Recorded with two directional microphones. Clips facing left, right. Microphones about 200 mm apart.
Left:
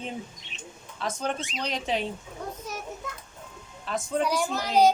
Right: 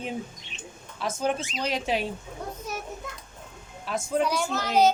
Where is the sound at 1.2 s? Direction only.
5° right (ahead or behind).